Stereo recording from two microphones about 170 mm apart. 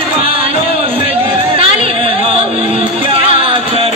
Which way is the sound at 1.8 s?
35° right (ahead or behind).